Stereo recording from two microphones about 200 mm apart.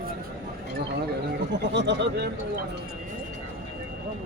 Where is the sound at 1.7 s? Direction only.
60° right (ahead or behind).